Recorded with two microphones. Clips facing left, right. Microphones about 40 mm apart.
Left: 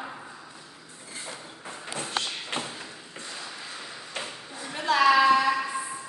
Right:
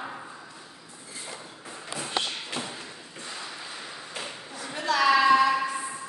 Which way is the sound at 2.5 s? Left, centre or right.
Left.